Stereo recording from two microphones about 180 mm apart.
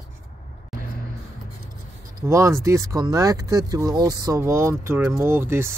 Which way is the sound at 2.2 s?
15° right (ahead or behind).